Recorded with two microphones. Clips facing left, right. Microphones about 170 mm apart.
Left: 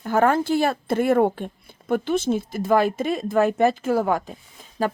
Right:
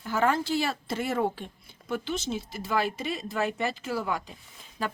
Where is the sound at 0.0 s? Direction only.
50° left (ahead or behind).